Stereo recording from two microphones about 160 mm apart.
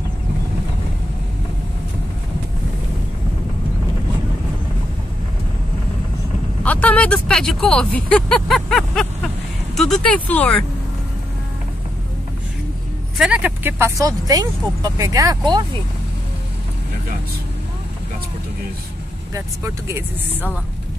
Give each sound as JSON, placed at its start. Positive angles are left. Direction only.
{"t": 6.6, "sound": "speech", "side_deg": 10}
{"t": 8.1, "sound": "vehicle", "side_deg": 5}
{"t": 9.8, "sound": "speech", "side_deg": 5}
{"t": 13.2, "sound": "speech", "side_deg": -10}
{"t": 19.3, "sound": "speech", "side_deg": -15}